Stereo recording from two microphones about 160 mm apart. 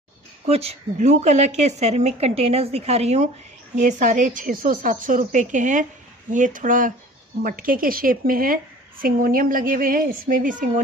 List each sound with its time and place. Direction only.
0.5 s a woman's voice: 40° right (ahead or behind); by 10.6 s 55° right (ahead or behind)